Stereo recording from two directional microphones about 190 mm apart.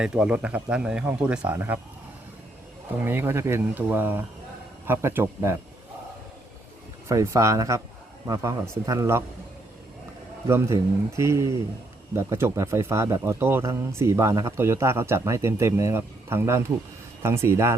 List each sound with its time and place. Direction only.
0.0 s speech: 5° right (ahead or behind)
3.0 s speech: 10° right (ahead or behind)
7.1 s speech: 15° right (ahead or behind)
10.4 s speech: 15° right (ahead or behind)